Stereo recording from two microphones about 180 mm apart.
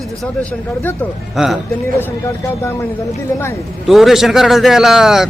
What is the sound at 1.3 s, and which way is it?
Speech, centre (ahead or behind).